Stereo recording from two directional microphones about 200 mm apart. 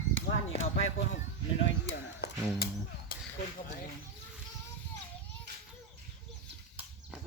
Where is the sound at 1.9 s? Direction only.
55° left (ahead or behind).